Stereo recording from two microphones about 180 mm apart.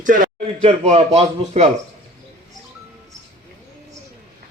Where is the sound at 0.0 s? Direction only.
45° right (ahead or behind).